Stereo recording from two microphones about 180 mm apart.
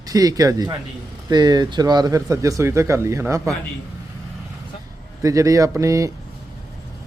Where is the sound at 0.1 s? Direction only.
20° right (ahead or behind).